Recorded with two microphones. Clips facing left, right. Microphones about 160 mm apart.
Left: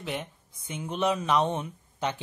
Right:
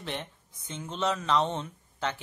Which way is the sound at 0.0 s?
10° left (ahead or behind).